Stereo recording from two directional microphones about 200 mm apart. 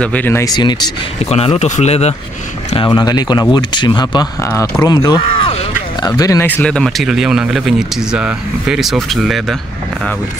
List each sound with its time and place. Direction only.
0.0 s speech: 10° left (ahead or behind)